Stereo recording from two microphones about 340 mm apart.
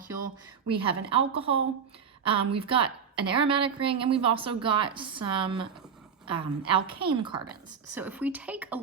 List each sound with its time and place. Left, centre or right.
0.7 s a woman's voice: centre